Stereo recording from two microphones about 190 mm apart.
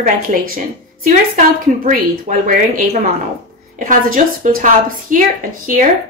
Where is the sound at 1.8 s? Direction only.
45° right (ahead or behind).